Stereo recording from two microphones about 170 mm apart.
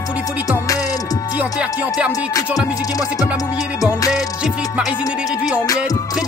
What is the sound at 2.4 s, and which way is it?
Music, 10° right (ahead or behind).